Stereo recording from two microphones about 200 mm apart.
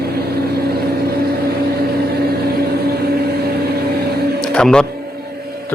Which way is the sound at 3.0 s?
50° right (ahead or behind).